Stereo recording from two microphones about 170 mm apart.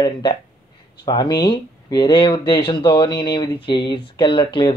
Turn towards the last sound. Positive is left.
turn(degrees=30)  # may be behind; listen again after turning